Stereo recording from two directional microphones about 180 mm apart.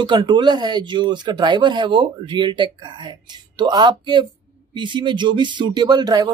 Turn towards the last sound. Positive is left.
turn(degrees=-20)  # may be behind; listen again after turning